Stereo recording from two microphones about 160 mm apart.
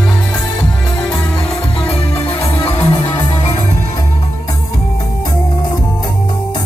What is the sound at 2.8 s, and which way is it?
Music, 25° left (ahead or behind).